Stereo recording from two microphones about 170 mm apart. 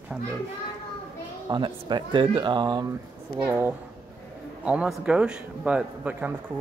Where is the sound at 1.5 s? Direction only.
25° right (ahead or behind).